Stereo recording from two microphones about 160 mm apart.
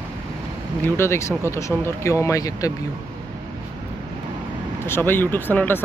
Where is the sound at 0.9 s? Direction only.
15° left (ahead or behind).